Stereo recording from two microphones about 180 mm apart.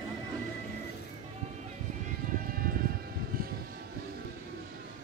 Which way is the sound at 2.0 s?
55° right (ahead or behind).